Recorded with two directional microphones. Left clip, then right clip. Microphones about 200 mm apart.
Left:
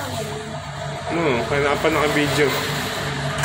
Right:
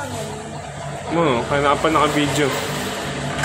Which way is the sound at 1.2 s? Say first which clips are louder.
Right 2 dB; 15° right (ahead or behind).